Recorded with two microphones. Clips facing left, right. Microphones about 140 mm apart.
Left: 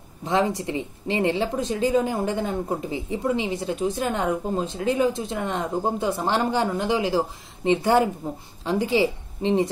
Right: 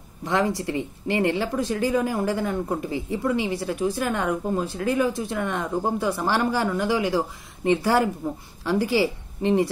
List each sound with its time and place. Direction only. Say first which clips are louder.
0.2 s a woman's voice: left 1 dB; 20° left (ahead or behind)